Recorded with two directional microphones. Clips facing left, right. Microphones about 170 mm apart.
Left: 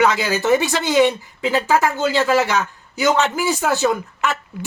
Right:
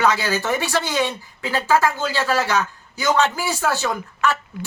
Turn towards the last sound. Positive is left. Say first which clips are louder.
# left 3 dB
turn(degrees=20)  # may be behind; listen again after turning